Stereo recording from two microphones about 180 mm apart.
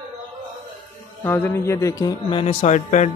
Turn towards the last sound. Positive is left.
turn(degrees=40)  # may be behind; listen again after turning